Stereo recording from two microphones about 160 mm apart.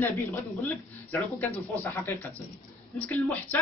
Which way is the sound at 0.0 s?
15° left (ahead or behind).